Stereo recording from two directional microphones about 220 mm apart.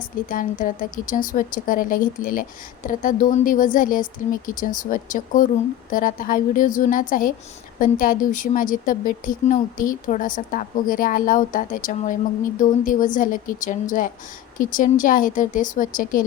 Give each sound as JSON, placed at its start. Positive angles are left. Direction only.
{"t": 0.3, "sound": "a woman's voice", "side_deg": 40}